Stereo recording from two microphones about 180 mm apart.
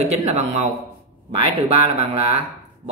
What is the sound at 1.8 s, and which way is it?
Speech, 30° right (ahead or behind).